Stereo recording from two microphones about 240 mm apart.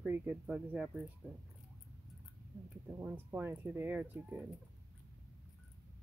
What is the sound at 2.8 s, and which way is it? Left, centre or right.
Speech, centre.